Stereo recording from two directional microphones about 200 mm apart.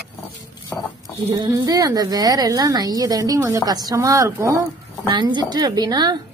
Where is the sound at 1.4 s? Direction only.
20° right (ahead or behind).